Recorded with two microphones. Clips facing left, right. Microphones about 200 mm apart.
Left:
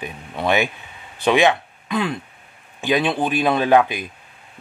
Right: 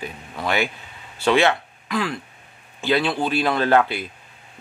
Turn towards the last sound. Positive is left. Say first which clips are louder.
# left 2 dB
turn(degrees=15)  # may be behind; listen again after turning